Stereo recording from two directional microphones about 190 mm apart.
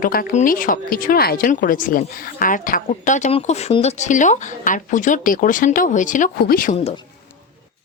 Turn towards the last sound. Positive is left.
turn(degrees=50)  # may be behind; listen again after turning